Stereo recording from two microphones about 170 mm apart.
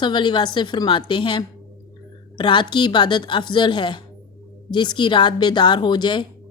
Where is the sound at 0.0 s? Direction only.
25° left (ahead or behind).